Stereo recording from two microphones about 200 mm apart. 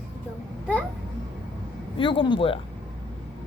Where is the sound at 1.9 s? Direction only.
25° left (ahead or behind).